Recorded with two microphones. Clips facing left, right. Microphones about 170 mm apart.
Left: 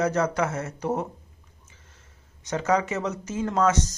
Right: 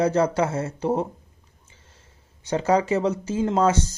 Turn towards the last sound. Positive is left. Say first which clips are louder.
# right 2 dB
turn(degrees=-30)  # may be behind; listen again after turning